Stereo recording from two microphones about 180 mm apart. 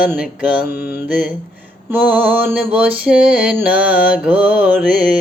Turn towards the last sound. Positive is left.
turn(degrees=-5)  # may be behind; listen again after turning